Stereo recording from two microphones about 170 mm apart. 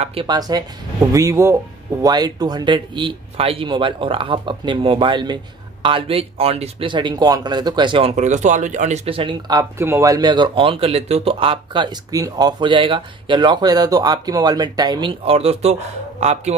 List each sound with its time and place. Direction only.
0.0 s speech: 30° right (ahead or behind)